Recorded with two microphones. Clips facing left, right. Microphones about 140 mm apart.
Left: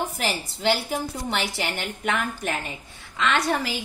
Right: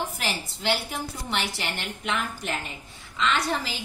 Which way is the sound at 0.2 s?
45° left (ahead or behind).